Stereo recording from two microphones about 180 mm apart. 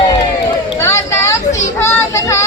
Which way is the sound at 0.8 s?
15° left (ahead or behind).